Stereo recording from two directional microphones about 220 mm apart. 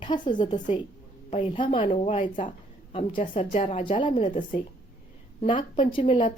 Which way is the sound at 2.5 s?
25° left (ahead or behind).